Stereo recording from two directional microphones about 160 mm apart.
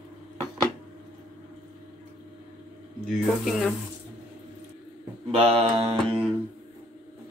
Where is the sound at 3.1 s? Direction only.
Centre (ahead or behind).